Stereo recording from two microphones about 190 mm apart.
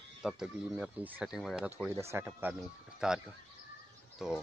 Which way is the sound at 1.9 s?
15° right (ahead or behind).